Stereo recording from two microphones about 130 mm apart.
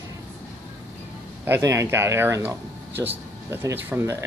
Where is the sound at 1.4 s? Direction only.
20° right (ahead or behind).